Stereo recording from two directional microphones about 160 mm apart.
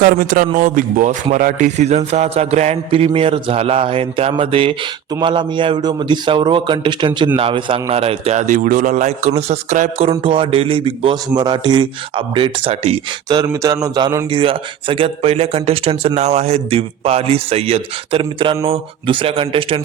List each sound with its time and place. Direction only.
0.0 s a man's voice: 65° right (ahead or behind)
10.1 s speech: 35° right (ahead or behind)
13.2 s a man's voice: 25° right (ahead or behind)
14.3 s speech: 30° right (ahead or behind)